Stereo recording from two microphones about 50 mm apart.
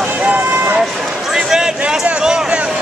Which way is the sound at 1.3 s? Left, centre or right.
Centre.